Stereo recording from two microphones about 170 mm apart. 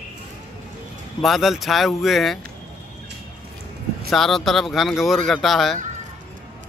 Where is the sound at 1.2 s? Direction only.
Centre (ahead or behind).